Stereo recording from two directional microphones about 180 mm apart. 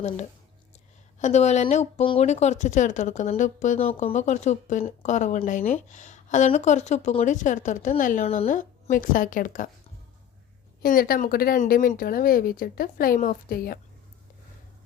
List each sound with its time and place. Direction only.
1.2 s speech: 40° left (ahead or behind)
8.4 s speech: 50° left (ahead or behind)
10.8 s speech: 55° left (ahead or behind)